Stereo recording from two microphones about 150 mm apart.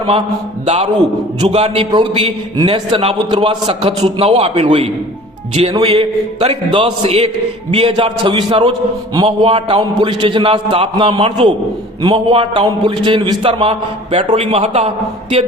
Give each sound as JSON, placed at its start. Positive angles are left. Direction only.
{"t": 0.6, "sound": "a man's voice", "side_deg": -50}